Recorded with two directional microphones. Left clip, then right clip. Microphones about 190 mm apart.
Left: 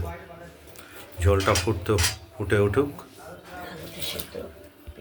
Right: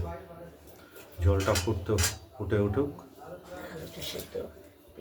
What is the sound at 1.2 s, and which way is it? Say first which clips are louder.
Speech: left 6 dB; 20° left (ahead or behind).